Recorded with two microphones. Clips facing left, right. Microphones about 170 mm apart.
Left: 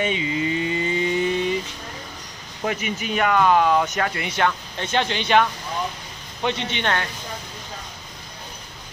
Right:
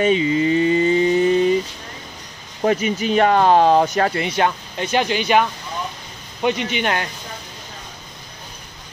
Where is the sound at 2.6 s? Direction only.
35° right (ahead or behind).